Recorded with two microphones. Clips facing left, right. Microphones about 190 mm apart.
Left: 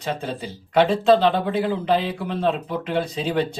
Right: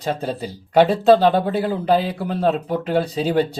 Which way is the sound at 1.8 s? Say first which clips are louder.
Right 3 dB; 40° right (ahead or behind).